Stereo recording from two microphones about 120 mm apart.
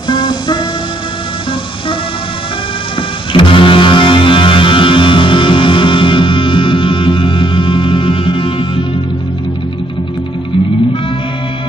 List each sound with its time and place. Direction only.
0.1 s music: 40° left (ahead or behind)
3.0 s music: 45° left (ahead or behind)